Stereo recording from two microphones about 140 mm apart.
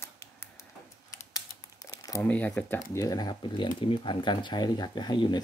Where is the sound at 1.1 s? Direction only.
25° left (ahead or behind).